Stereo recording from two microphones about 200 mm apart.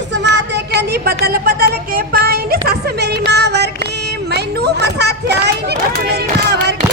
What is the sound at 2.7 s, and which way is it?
Child singing, 55° right (ahead or behind).